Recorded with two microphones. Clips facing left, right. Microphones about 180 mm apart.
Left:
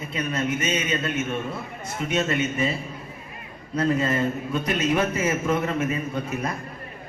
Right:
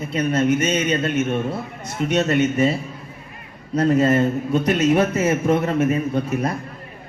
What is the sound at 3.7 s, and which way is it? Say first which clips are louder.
A woman's voice: right 6 dB; 40° right (ahead or behind).